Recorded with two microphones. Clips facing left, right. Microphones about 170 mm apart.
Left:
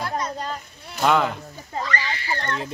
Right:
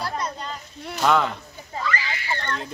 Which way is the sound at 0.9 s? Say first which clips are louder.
Left 1 dB; 5° left (ahead or behind).